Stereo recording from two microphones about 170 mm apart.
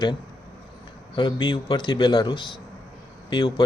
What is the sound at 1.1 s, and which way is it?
A man's voice, 30° left (ahead or behind).